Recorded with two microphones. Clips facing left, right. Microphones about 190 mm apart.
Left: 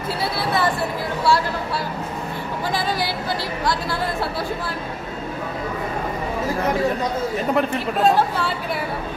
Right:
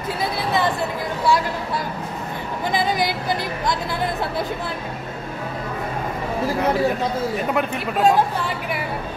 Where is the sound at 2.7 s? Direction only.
20° right (ahead or behind).